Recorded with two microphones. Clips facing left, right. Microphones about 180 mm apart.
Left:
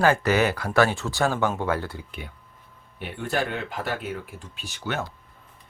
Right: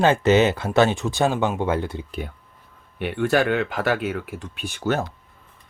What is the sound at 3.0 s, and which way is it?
Speech, 75° right (ahead or behind).